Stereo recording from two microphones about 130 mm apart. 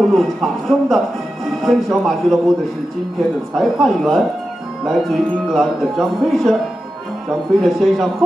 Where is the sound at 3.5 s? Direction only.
Centre (ahead or behind).